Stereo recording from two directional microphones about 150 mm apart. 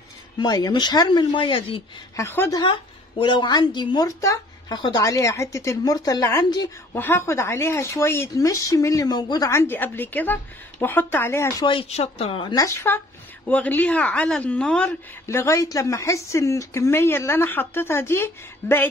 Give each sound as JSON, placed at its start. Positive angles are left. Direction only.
{"t": 0.4, "sound": "a woman's voice", "side_deg": 25}
{"t": 2.1, "sound": "speech", "side_deg": 15}
{"t": 3.2, "sound": "a woman's voice", "side_deg": 30}
{"t": 5.0, "sound": "a woman's voice", "side_deg": 20}
{"t": 11.6, "sound": "speech", "side_deg": 40}
{"t": 12.6, "sound": "speech", "side_deg": 15}
{"t": 15.2, "sound": "speech", "side_deg": 20}